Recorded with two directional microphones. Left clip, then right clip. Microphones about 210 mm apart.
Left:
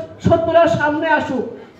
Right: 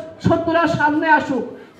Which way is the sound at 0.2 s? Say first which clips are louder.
Left 4 dB; 30° right (ahead or behind).